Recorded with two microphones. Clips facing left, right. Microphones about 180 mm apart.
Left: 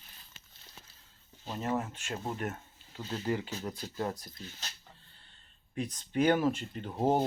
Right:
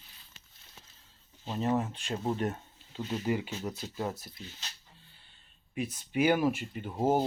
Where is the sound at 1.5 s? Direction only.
20° right (ahead or behind).